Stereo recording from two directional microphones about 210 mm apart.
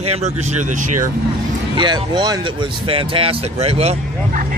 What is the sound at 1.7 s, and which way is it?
Speech, 20° right (ahead or behind).